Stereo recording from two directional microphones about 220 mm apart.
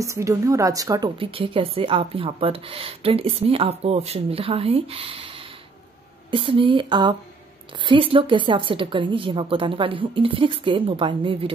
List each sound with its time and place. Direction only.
0.0 s a woman's voice: 15° right (ahead or behind)